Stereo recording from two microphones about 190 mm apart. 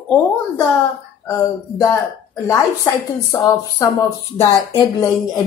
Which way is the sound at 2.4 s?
15° left (ahead or behind).